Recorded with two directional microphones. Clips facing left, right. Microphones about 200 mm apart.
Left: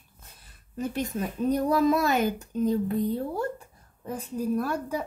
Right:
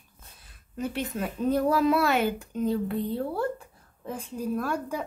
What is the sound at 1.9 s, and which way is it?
Speech, 40° left (ahead or behind).